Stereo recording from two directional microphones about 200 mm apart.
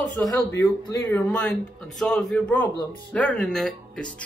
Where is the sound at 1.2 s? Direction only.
Centre (ahead or behind).